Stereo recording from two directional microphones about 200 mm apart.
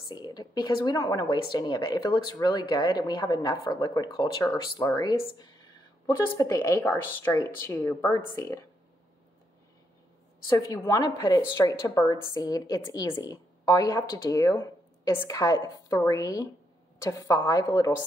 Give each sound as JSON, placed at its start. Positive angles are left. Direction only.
{"t": 0.1, "sound": "a woman's voice", "side_deg": 20}
{"t": 10.5, "sound": "a woman's voice", "side_deg": 20}